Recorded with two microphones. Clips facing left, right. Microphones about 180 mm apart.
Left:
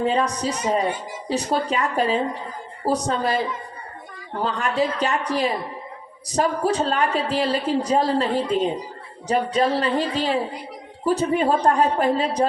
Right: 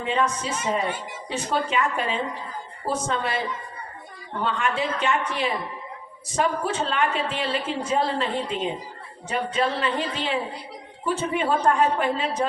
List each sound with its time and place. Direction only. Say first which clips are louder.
0.0 s a woman's voice: left 4 dB; 35° left (ahead or behind)
4.4 s a woman's voice: left 3 dB; 40° left (ahead or behind)